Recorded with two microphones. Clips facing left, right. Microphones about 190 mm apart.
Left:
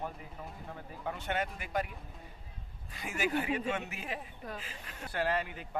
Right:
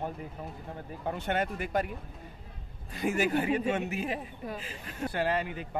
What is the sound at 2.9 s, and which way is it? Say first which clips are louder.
Speech: right 6 dB; 45° right (ahead or behind).